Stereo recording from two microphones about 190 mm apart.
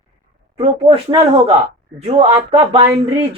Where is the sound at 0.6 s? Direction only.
30° right (ahead or behind).